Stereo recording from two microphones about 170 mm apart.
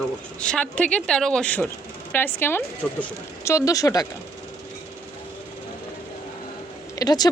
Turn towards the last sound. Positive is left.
turn(degrees=25)  # may be behind; listen again after turning